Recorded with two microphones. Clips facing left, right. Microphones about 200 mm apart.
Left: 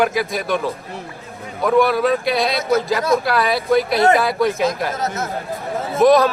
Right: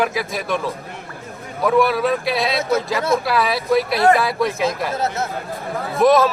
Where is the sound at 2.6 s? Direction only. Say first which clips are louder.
Left 2 dB; 25° right (ahead or behind).